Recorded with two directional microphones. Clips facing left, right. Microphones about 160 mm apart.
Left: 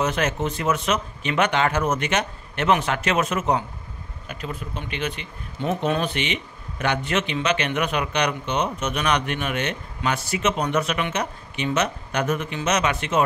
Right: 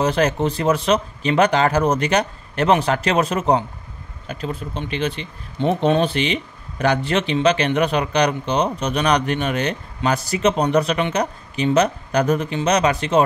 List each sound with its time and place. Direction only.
0.0 s speech: 35° right (ahead or behind)